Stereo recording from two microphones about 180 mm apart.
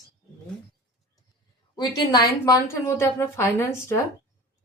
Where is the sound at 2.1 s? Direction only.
20° left (ahead or behind).